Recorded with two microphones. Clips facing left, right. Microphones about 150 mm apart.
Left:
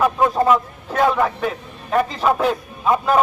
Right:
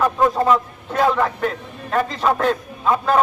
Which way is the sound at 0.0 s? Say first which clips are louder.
Left 1 dB; 10° left (ahead or behind).